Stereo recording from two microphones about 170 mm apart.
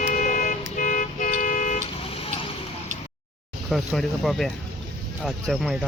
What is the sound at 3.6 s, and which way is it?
Speech, centre (ahead or behind).